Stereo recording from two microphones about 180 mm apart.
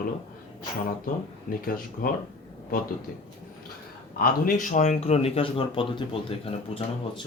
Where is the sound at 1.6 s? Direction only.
55° left (ahead or behind).